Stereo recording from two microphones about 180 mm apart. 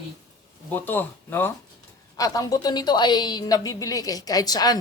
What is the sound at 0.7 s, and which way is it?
A woman's voice, 10° left (ahead or behind).